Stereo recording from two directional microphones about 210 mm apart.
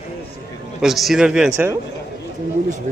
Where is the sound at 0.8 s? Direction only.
Centre (ahead or behind).